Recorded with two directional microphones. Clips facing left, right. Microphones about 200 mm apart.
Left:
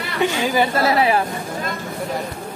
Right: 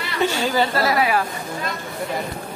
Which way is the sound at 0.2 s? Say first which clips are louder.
Left 1 dB; 15° left (ahead or behind).